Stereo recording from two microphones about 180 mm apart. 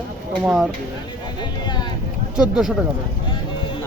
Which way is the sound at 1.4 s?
25° left (ahead or behind).